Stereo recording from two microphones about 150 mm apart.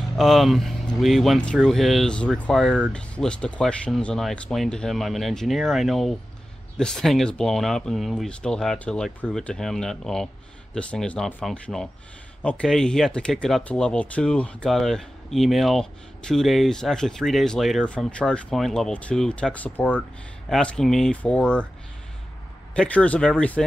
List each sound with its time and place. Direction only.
0.2 s speech: centre (ahead or behind)
22.8 s speech: 10° left (ahead or behind)